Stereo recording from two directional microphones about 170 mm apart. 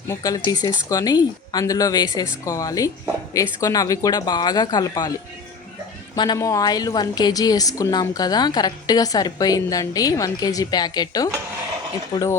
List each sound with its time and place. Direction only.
0.1 s a woman's voice: 20° left (ahead or behind)
6.1 s a woman's voice: 25° left (ahead or behind)